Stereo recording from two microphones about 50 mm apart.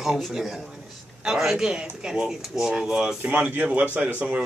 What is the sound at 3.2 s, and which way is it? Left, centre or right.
A man's voice, right.